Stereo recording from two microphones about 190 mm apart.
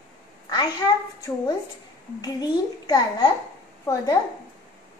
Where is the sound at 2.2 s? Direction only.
20° left (ahead or behind).